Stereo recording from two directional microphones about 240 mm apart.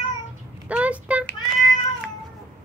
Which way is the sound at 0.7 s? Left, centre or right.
Centre.